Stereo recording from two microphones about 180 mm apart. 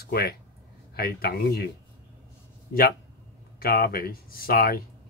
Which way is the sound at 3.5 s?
60° left (ahead or behind).